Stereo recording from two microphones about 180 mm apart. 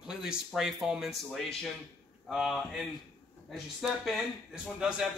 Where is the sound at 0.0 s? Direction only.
5° right (ahead or behind).